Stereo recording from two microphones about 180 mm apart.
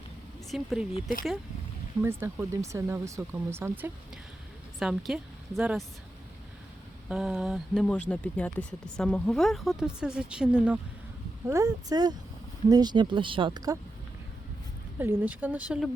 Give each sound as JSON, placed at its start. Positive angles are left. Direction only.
{"t": 0.5, "sound": "speech", "side_deg": 0}
{"t": 2.0, "sound": "a woman's voice", "side_deg": -15}
{"t": 7.1, "sound": "speech", "side_deg": 0}
{"t": 11.4, "sound": "speech", "side_deg": -20}
{"t": 14.9, "sound": "speech", "side_deg": -10}